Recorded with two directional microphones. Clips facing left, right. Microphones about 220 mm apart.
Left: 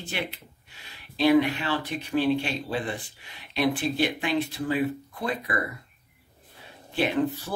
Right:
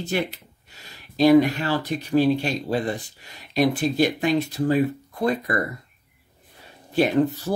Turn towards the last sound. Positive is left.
turn(degrees=-40)  # may be behind; listen again after turning